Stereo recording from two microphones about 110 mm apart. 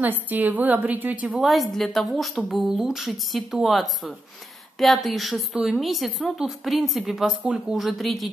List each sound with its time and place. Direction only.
0.0 s a woman's voice: 15° right (ahead or behind)
1.3 s a woman's voice: centre (ahead or behind)